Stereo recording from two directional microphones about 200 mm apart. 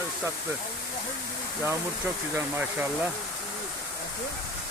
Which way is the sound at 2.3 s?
10° right (ahead or behind).